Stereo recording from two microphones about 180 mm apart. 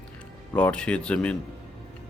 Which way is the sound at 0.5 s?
5° left (ahead or behind).